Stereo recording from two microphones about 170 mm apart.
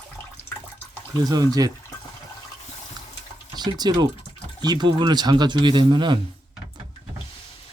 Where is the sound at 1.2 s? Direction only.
25° right (ahead or behind).